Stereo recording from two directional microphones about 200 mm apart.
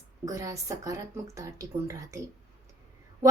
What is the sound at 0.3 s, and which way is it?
A woman's voice, 15° right (ahead or behind).